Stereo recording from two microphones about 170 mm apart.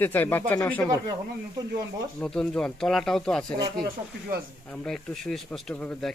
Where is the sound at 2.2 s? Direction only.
5° left (ahead or behind).